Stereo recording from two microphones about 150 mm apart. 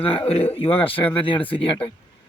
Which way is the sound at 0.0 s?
35° left (ahead or behind).